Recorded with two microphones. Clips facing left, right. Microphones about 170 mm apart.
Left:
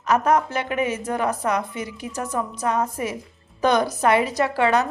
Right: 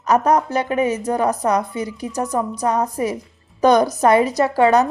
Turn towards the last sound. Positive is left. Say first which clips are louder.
# right 5 dB
turn(degrees=-40)  # may be behind; listen again after turning